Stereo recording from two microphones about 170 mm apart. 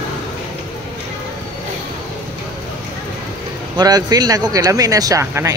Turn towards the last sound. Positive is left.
turn(degrees=-15)  # may be behind; listen again after turning